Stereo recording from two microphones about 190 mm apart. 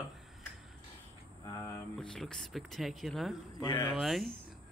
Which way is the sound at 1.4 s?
20° left (ahead or behind).